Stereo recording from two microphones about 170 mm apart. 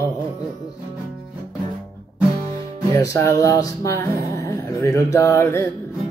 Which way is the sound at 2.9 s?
15° left (ahead or behind).